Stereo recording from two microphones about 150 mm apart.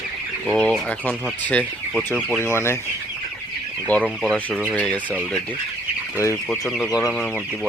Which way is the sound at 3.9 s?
10° left (ahead or behind).